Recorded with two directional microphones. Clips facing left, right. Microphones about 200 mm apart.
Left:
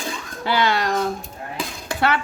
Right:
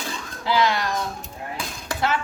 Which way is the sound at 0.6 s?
65° left (ahead or behind).